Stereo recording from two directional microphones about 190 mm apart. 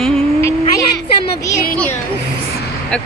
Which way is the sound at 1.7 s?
10° left (ahead or behind).